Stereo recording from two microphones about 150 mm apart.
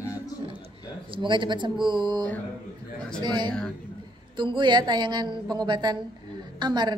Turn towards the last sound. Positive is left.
turn(degrees=-30)  # may be behind; listen again after turning